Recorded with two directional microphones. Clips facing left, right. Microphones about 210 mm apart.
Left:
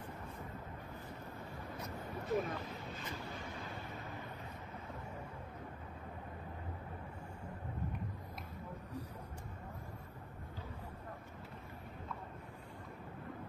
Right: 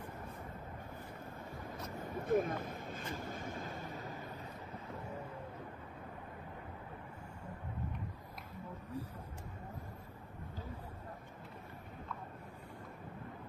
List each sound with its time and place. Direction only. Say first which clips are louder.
2.2 s vehicle: right 4 dB; 55° right (ahead or behind)